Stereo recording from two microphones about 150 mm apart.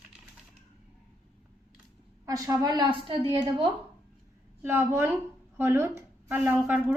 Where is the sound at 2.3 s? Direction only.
25° right (ahead or behind).